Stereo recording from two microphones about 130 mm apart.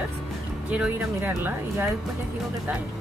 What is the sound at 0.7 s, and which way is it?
Speech, 10° right (ahead or behind).